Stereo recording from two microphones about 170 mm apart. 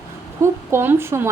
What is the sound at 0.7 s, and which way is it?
Speech, 15° right (ahead or behind).